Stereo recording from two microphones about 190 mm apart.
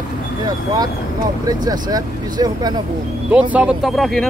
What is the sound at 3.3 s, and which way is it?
Speech, 5° right (ahead or behind).